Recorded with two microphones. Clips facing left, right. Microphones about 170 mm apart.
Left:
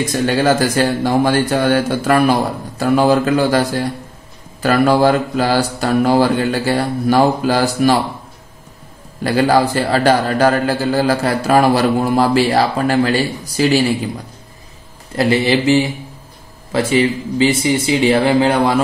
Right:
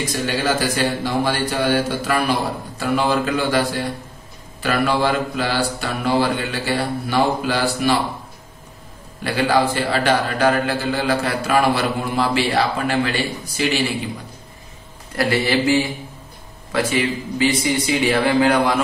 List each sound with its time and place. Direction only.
0.4 s a man's voice: 45° left (ahead or behind)
9.2 s a man's voice: 40° left (ahead or behind)
15.1 s a man's voice: 20° left (ahead or behind)
16.7 s a man's voice: 30° left (ahead or behind)